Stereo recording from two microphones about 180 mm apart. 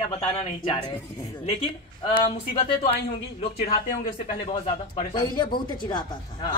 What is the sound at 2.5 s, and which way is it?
Speech, 30° left (ahead or behind).